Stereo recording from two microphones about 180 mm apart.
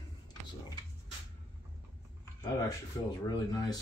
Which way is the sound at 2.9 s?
15° left (ahead or behind).